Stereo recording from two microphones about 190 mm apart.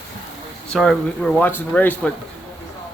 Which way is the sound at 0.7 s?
5° left (ahead or behind).